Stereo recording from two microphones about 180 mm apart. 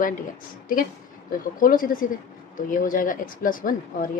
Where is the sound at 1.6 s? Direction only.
50° left (ahead or behind).